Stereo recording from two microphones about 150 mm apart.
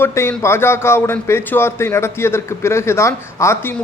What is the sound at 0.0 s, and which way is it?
A man's voice, 15° left (ahead or behind).